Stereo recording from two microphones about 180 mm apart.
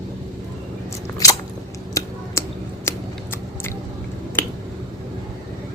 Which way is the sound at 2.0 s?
15° left (ahead or behind).